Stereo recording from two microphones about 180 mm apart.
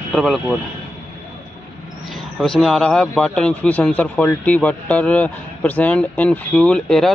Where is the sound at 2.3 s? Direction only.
5° left (ahead or behind).